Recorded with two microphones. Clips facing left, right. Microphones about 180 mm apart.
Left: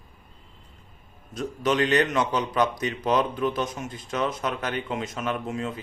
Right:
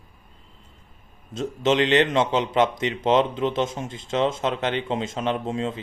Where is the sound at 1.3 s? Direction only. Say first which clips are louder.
Right 3 dB; 25° right (ahead or behind).